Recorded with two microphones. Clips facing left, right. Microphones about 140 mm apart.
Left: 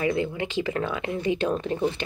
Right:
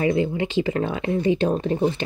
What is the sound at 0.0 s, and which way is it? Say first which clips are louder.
Speech: right 4 dB; 30° right (ahead or behind).